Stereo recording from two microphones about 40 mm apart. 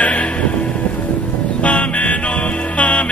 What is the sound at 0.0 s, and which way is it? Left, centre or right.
Music, left.